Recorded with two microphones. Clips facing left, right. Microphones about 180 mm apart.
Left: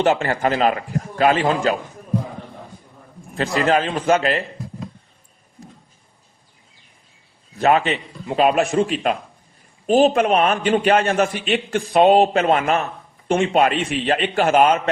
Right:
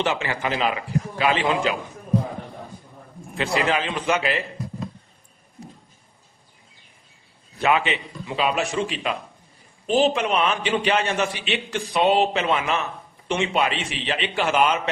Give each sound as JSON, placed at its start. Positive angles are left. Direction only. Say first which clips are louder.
{"t": 0.0, "sound": "a man's voice", "louder": "left 6 dB", "side_deg": 45}
{"t": 3.3, "sound": "a man's voice", "louder": "left 4 dB", "side_deg": 45}
{"t": 7.6, "sound": "a man's voice", "louder": "left 4 dB", "side_deg": 40}